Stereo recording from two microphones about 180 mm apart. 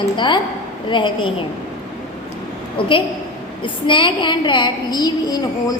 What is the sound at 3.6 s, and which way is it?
A woman's voice, 25° left (ahead or behind).